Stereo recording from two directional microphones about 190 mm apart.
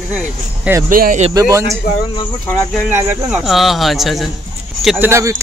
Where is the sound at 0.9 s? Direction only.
45° right (ahead or behind).